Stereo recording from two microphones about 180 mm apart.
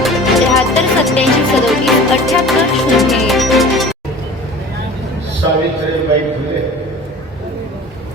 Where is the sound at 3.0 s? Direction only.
Centre (ahead or behind).